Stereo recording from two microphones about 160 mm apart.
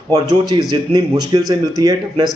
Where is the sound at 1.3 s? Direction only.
25° right (ahead or behind).